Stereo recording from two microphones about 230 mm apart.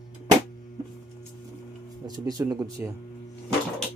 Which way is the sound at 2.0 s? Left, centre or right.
Centre.